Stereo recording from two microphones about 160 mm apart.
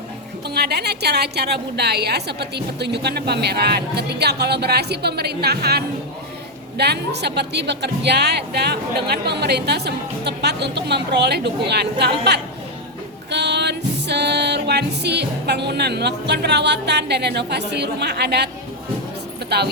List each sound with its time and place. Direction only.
0.4 s a woman's voice: 90° right
13.3 s music: 90° right
19.5 s a woman's voice: 90° right